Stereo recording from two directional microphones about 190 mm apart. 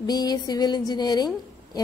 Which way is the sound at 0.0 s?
20° left (ahead or behind).